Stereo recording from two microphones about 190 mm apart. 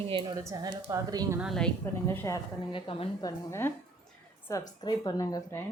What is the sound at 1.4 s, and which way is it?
A woman's voice, centre (ahead or behind).